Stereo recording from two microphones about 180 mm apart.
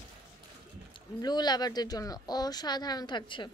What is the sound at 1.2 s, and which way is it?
A woman's voice, 25° left (ahead or behind).